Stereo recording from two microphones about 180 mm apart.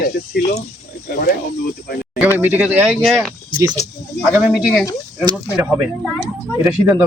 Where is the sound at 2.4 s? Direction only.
10° right (ahead or behind).